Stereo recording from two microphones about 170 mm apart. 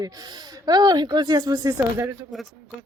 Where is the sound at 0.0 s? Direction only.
25° right (ahead or behind).